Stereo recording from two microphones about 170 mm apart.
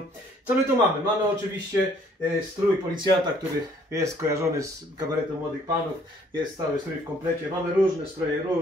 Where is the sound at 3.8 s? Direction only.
20° right (ahead or behind).